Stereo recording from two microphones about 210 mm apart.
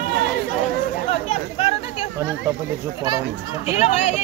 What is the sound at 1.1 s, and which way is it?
Chatter, 30° left (ahead or behind).